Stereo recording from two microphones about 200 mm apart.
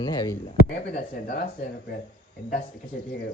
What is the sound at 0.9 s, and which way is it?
Speech, 45° left (ahead or behind).